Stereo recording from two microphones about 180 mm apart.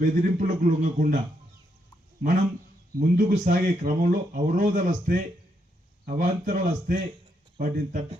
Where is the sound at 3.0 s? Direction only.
50° right (ahead or behind).